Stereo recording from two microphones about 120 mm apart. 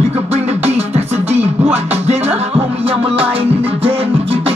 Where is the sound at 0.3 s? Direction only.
60° right (ahead or behind).